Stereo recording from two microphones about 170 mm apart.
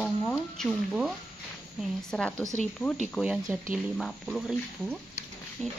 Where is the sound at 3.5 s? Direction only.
10° right (ahead or behind).